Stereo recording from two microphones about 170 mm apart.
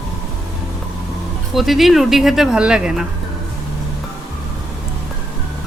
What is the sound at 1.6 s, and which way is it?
Speech, centre (ahead or behind).